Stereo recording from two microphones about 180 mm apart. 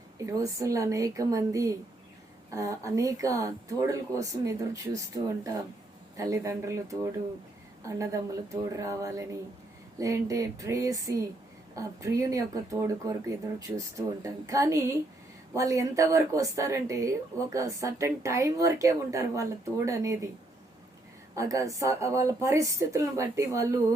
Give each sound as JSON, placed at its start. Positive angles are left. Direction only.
{"t": 0.3, "sound": "speech", "side_deg": -20}
{"t": 21.3, "sound": "speech", "side_deg": -20}